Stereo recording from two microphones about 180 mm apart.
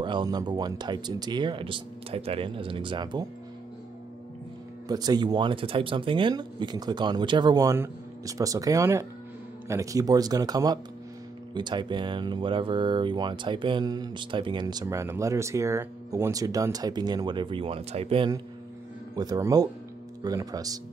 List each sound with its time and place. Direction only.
0.0 s speech: 25° right (ahead or behind)
4.8 s speech: 20° right (ahead or behind)